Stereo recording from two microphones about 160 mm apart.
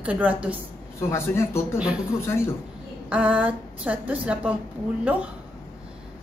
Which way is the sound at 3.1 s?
10° right (ahead or behind).